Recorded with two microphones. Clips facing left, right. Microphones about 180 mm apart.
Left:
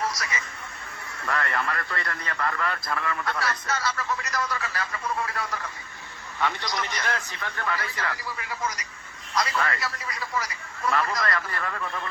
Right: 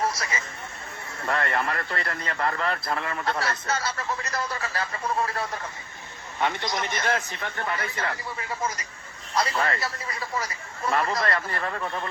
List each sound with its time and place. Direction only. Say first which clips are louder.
0.0 s a man's voice: right 2 dB; 30° right (ahead or behind)